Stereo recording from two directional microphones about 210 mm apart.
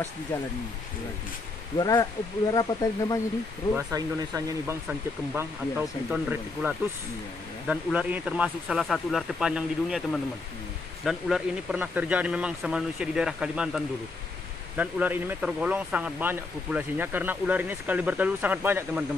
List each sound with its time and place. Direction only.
1.8 s speech: 15° left (ahead or behind)
3.7 s a man's voice: 15° right (ahead or behind)